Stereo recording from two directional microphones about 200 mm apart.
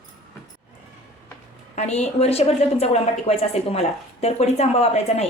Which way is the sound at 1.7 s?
35° left (ahead or behind).